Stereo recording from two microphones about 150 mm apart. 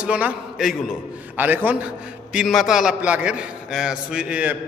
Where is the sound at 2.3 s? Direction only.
Centre (ahead or behind).